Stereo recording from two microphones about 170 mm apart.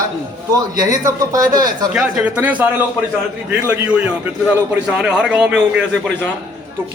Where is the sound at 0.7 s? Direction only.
20° right (ahead or behind).